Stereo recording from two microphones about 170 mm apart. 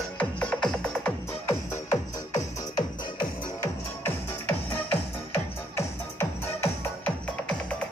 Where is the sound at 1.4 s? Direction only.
20° left (ahead or behind).